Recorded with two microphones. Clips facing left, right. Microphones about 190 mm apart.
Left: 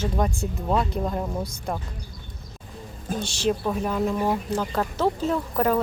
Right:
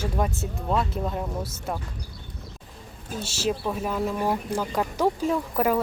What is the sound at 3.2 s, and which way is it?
Speech, 5° right (ahead or behind).